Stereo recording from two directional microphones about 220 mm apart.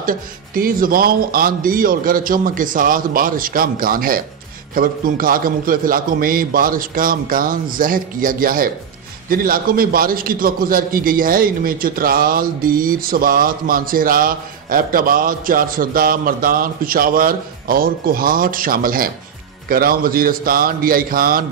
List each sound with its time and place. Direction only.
0.6 s a man's voice: 40° right (ahead or behind)